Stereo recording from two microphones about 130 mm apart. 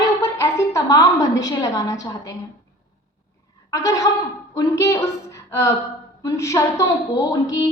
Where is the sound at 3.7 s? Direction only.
25° left (ahead or behind).